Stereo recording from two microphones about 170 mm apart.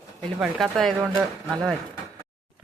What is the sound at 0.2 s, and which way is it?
Speech, centre (ahead or behind).